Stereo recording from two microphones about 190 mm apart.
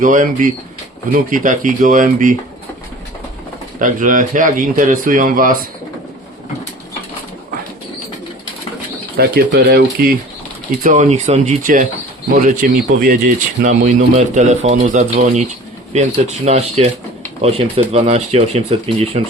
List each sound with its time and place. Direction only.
0.0 s speech: 45° right (ahead or behind)
3.8 s speech: 45° right (ahead or behind)
9.1 s speech: 55° right (ahead or behind)
10.8 s speech: 40° right (ahead or behind)